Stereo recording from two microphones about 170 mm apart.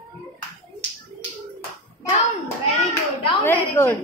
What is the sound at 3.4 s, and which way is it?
Speech, 15° left (ahead or behind).